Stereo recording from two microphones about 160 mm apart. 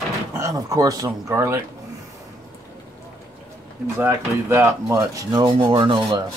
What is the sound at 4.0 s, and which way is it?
Rub, 15° right (ahead or behind).